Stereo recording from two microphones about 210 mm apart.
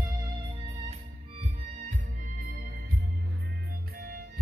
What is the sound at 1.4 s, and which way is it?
Music, 35° right (ahead or behind).